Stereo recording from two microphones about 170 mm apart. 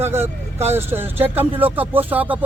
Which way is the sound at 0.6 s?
40° right (ahead or behind).